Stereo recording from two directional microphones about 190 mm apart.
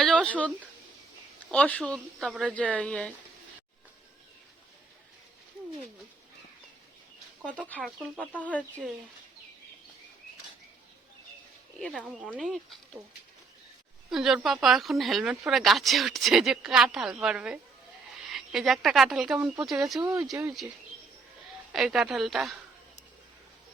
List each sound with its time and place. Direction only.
0.0 s a sound: 5° left (ahead or behind)
1.5 s speech: 5° left (ahead or behind)
7.8 s speech: centre (ahead or behind)
8.3 s speech: 10° left (ahead or behind)
11.8 s speech: 5° left (ahead or behind)
14.1 s a woman's voice: centre (ahead or behind)
20.3 s speech: 20° right (ahead or behind)
21.7 s speech: centre (ahead or behind)